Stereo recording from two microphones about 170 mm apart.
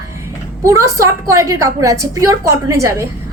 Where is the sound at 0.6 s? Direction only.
15° right (ahead or behind).